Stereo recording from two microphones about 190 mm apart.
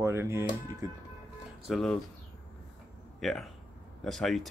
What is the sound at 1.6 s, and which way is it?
Speech, centre (ahead or behind).